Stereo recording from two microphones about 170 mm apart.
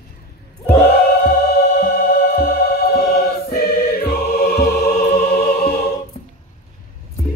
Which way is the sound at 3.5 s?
65° left (ahead or behind).